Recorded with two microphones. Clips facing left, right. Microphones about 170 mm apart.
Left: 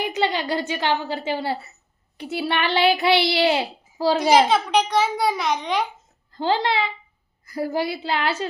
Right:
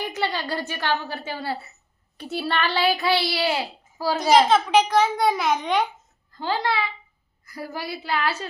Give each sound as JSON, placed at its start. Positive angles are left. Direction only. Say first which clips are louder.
{"t": 0.0, "sound": "a child's voice", "louder": "left 4 dB", "side_deg": 15}
{"t": 2.1, "sound": "a child's voice", "louder": "left 2 dB", "side_deg": 10}
{"t": 4.3, "sound": "a child's voice", "louder": "right 2 dB", "side_deg": 0}
{"t": 6.3, "sound": "a child's voice", "louder": "left 3 dB", "side_deg": 30}